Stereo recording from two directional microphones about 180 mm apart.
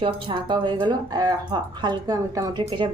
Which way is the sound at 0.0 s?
30° right (ahead or behind).